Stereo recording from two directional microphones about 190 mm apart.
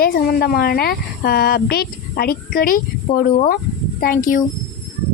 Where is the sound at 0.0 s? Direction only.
50° left (ahead or behind).